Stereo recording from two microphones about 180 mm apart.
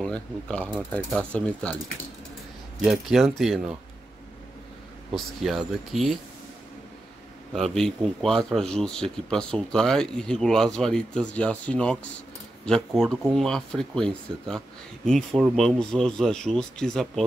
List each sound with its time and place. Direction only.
0.0 s speech: 5° left (ahead or behind)
2.8 s speech: centre (ahead or behind)
5.1 s speech: centre (ahead or behind)
7.5 s speech: centre (ahead or behind)